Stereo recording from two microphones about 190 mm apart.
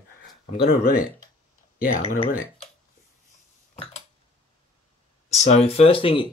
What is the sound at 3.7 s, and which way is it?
Cutlery, 30° left (ahead or behind).